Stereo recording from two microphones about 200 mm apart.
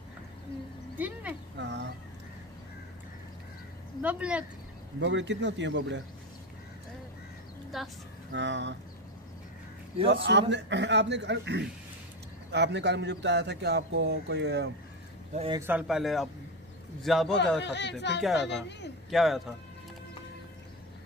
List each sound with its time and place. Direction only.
0.9 s speech: 10° right (ahead or behind)
1.6 s a sound: 60° right (ahead or behind)
4.0 s speech: 5° right (ahead or behind)
5.0 s speech: 65° right (ahead or behind)
7.7 s a man's voice: centre (ahead or behind)
8.3 s speech: 65° right (ahead or behind)
10.2 s speech: 60° right (ahead or behind)
15.3 s a man's voice: 25° right (ahead or behind)
15.6 s a man's voice: 5° right (ahead or behind)
17.6 s speech: 60° left (ahead or behind)
19.0 s a man's voice: centre (ahead or behind)